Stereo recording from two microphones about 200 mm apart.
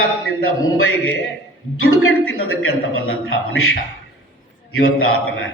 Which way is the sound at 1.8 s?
90° left.